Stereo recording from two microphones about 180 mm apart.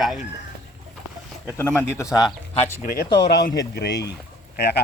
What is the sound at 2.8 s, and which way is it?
Speech, 55° left (ahead or behind).